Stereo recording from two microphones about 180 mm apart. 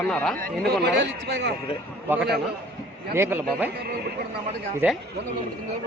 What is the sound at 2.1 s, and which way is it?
Speech, 5° right (ahead or behind).